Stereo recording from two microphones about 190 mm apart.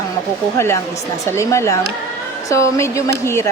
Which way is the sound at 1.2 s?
15° left (ahead or behind).